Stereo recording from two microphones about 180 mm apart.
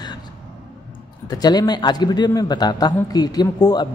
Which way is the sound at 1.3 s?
20° left (ahead or behind).